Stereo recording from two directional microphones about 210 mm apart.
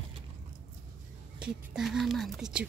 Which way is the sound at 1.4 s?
Centre (ahead or behind).